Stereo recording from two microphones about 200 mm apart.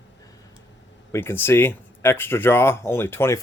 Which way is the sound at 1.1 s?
10° left (ahead or behind).